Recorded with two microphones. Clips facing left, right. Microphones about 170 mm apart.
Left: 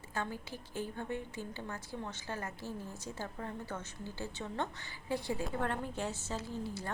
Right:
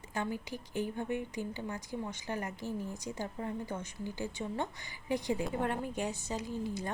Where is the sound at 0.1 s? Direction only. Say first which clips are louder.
Right 3 dB; 15° right (ahead or behind).